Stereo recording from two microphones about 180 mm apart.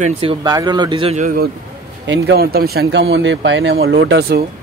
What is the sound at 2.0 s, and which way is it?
Speech, 80° right.